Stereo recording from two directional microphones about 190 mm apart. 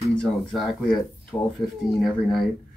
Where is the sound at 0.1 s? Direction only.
5° left (ahead or behind).